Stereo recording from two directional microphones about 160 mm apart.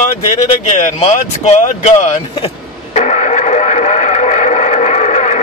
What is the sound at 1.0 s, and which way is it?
Speech, 45° left (ahead or behind).